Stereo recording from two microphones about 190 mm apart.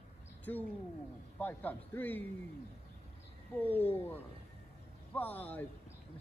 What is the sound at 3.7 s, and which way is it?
Speech, 10° left (ahead or behind).